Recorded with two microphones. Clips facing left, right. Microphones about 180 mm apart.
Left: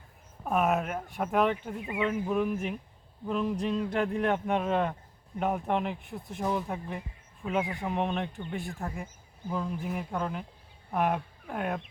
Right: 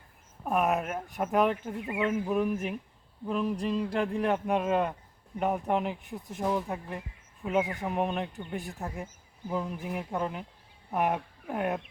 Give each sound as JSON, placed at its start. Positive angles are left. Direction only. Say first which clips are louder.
{"t": 0.4, "sound": "speech", "louder": "even", "side_deg": 0}
{"t": 8.6, "sound": "speech", "louder": "left 1 dB", "side_deg": -20}
{"t": 11.1, "sound": "speech", "louder": "right 1 dB", "side_deg": -5}